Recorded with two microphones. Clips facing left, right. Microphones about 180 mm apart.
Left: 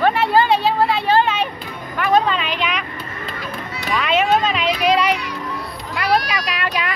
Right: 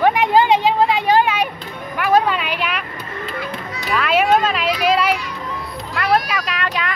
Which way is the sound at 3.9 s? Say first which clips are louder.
Right 1 dB; 5° right (ahead or behind).